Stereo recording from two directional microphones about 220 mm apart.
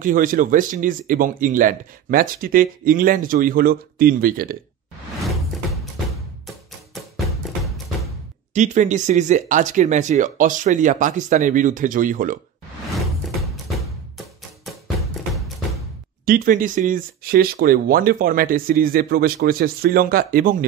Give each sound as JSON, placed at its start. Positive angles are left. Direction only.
{"t": 0.0, "sound": "speech", "side_deg": -40}
{"t": 5.2, "sound": "door", "side_deg": 0}
{"t": 6.4, "sound": "music", "side_deg": 0}
{"t": 8.5, "sound": "speech", "side_deg": -35}
{"t": 13.4, "sound": "music", "side_deg": 0}
{"t": 16.3, "sound": "speech", "side_deg": -40}